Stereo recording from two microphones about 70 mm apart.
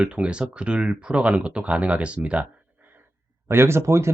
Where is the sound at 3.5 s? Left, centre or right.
Right.